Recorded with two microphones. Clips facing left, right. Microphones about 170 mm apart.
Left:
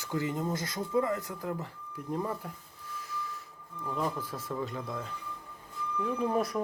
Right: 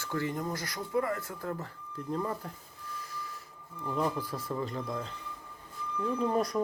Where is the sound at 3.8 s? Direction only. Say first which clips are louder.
Right 2 dB; centre (ahead or behind).